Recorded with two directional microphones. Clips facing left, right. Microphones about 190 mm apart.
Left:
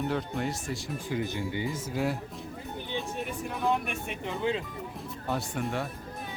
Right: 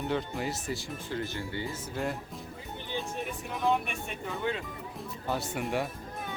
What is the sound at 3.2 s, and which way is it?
Music, centre (ahead or behind).